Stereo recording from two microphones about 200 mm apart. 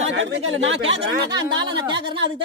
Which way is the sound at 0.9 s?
20° right (ahead or behind).